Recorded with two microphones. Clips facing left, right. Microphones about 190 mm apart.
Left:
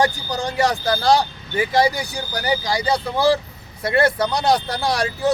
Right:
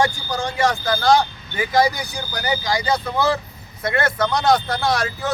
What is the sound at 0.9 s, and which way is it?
Speech, 35° left (ahead or behind).